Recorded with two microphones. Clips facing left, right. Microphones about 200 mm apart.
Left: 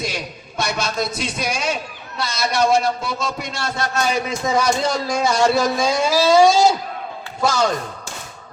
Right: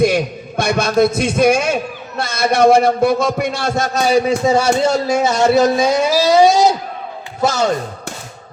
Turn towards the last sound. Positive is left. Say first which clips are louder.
# right 3 dB
turn(degrees=-20)  # may be behind; listen again after turning